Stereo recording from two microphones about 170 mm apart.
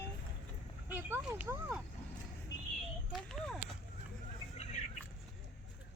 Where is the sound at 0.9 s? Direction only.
10° right (ahead or behind).